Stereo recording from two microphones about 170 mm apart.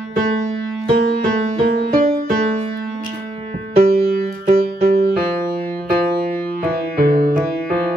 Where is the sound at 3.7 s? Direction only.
60° right (ahead or behind).